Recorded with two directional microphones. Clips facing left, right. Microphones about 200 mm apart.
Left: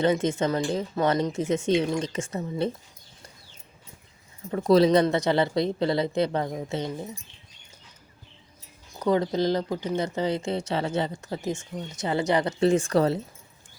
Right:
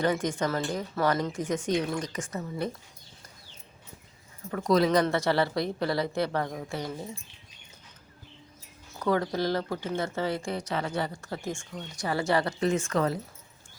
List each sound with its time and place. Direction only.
0.0 s speech: 25° left (ahead or behind)
4.5 s speech: 25° left (ahead or behind)
8.9 s speech: 20° left (ahead or behind)